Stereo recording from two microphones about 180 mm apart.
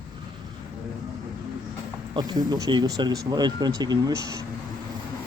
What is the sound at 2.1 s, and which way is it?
Speech, 25° right (ahead or behind).